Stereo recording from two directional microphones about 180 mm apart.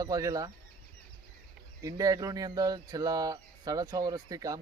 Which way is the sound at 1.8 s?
20° right (ahead or behind).